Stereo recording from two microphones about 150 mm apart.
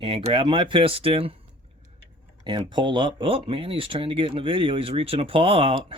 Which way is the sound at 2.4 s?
30° right (ahead or behind).